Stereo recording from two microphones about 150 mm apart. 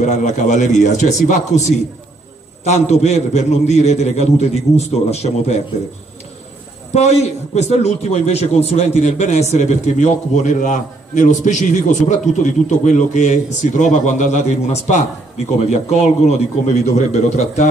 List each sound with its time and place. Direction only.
0.0 s a man's voice: 50° left (ahead or behind)
6.9 s a man's voice: 45° left (ahead or behind)